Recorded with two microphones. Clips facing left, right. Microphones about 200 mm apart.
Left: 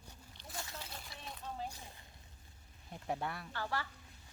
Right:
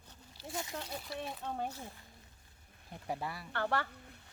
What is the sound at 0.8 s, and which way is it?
Speech, 60° right (ahead or behind).